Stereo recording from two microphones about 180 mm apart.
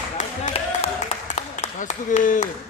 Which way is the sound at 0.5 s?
35° left (ahead or behind).